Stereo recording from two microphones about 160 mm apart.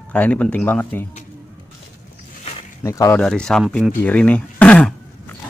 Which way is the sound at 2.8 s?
20° left (ahead or behind).